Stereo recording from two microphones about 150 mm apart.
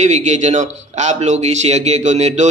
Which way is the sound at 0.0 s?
50° right (ahead or behind).